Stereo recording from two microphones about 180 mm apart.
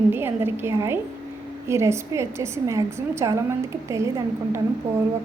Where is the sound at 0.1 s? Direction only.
10° right (ahead or behind).